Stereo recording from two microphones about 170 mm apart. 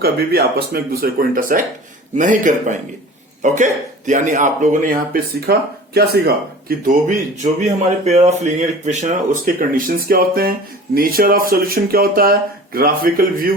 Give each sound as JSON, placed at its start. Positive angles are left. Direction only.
{"t": 0.0, "sound": "speech", "side_deg": -70}